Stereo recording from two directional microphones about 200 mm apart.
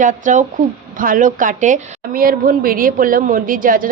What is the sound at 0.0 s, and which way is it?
A woman's voice, 40° right (ahead or behind).